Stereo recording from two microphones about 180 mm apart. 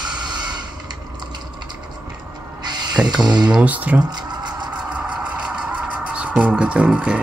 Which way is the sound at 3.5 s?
10° right (ahead or behind).